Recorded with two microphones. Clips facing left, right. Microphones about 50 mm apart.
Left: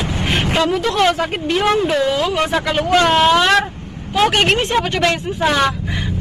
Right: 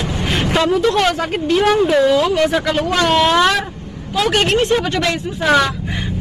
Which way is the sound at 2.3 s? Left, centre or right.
Left.